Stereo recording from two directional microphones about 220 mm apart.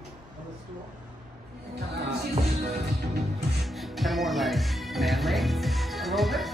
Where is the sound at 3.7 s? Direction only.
Centre (ahead or behind).